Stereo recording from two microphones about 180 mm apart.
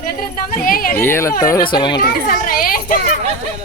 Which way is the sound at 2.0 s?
50° left (ahead or behind).